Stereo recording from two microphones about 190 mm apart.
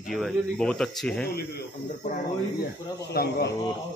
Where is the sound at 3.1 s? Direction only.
60° left (ahead or behind).